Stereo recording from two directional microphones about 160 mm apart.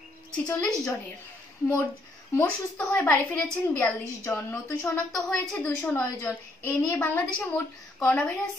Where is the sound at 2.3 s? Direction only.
10° left (ahead or behind).